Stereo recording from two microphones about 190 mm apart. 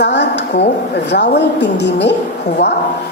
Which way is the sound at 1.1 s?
65° left (ahead or behind).